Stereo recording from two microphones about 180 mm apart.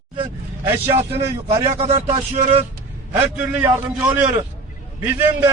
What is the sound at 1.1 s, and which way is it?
Speech, 15° right (ahead or behind).